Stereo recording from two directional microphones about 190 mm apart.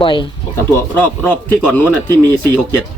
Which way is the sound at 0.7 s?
10° left (ahead or behind).